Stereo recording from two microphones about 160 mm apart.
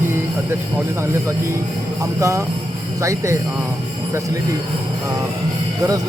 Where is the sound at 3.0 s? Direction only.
20° right (ahead or behind).